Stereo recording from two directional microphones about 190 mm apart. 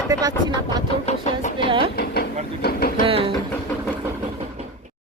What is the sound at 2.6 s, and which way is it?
Train, 50° left (ahead or behind).